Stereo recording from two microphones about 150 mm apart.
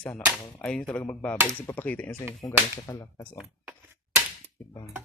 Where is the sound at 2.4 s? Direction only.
25° left (ahead or behind).